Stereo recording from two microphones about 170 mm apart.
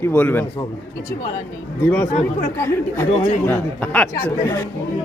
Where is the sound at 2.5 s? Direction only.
15° left (ahead or behind).